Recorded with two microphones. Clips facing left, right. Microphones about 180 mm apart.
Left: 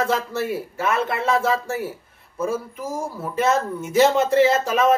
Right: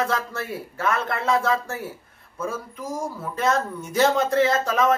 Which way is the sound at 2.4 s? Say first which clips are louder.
Left 5 dB; 25° left (ahead or behind).